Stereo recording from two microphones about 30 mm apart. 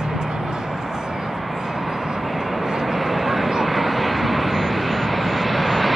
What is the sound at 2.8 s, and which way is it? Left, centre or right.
Vehicle, centre.